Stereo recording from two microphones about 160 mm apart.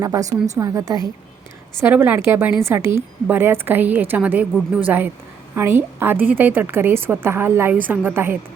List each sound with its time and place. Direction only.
0.0 s a woman's voice: 20° right (ahead or behind)
1.8 s a woman's voice: 10° right (ahead or behind)